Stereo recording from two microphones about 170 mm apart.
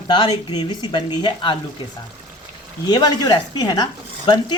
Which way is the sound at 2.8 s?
25° left (ahead or behind).